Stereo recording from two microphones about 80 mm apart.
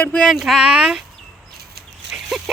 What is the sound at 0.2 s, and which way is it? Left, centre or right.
Speech, centre.